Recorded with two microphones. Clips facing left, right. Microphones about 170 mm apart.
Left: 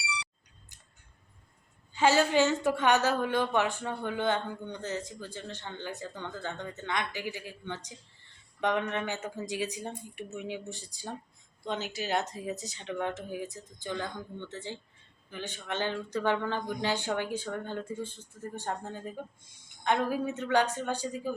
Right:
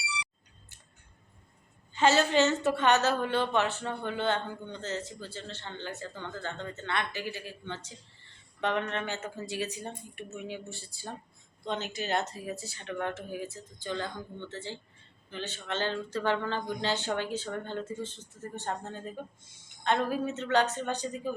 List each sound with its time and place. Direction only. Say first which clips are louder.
1.9 s a woman's voice: even; 10° left (ahead or behind)